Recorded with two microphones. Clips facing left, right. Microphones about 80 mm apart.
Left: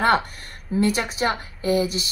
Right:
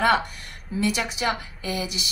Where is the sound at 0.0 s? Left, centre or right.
Left.